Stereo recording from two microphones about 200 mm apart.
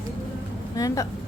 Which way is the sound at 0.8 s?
15° left (ahead or behind).